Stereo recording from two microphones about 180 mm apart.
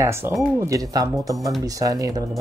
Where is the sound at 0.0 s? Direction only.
15° right (ahead or behind).